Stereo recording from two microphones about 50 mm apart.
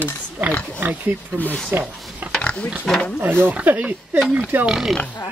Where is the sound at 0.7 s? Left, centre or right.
Right.